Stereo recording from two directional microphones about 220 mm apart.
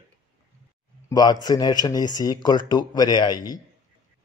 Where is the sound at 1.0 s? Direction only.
20° left (ahead or behind).